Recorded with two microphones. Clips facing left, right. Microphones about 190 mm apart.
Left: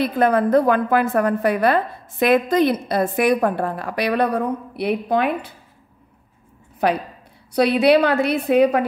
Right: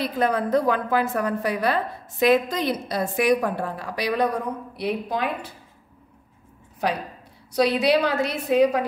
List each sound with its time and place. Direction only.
0.0 s a woman's voice: 55° left (ahead or behind)
6.8 s a woman's voice: 60° left (ahead or behind)